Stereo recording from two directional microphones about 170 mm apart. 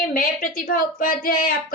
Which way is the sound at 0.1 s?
55° left (ahead or behind).